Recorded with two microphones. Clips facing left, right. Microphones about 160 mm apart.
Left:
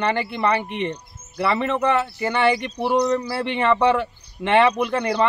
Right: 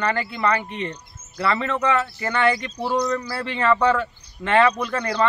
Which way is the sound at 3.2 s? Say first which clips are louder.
Left 4 dB; 25° left (ahead or behind).